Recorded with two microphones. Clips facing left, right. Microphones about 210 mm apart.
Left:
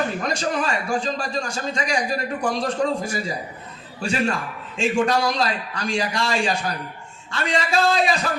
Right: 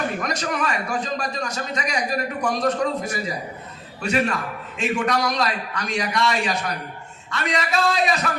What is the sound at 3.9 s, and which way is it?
A man's voice, 30° left (ahead or behind).